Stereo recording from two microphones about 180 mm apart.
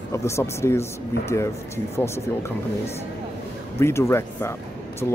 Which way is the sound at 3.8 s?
15° left (ahead or behind).